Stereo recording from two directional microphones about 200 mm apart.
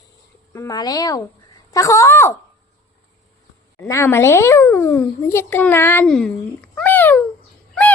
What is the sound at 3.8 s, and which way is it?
A child's voice, 15° left (ahead or behind).